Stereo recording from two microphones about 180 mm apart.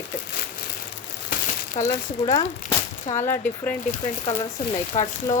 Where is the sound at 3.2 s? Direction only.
10° left (ahead or behind).